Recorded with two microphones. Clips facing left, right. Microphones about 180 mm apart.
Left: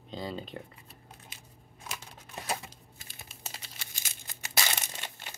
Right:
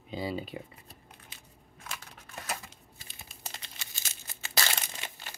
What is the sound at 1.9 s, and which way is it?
Typewriter, 25° left (ahead or behind).